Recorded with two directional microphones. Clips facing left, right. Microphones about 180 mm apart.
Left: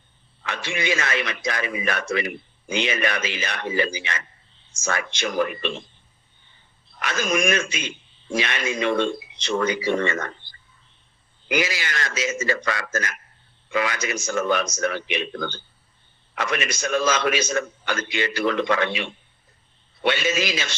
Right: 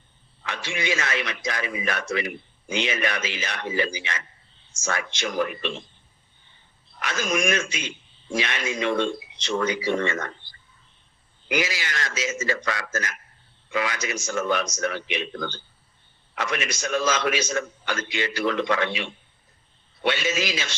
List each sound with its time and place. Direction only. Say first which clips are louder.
0.4 s a man's voice: left 2 dB; 60° left (ahead or behind)
7.0 s a man's voice: left 2 dB; 60° left (ahead or behind)
11.4 s a man's voice: left 2 dB; 60° left (ahead or behind)
20.1 s a man's voice: left 2 dB; 60° left (ahead or behind)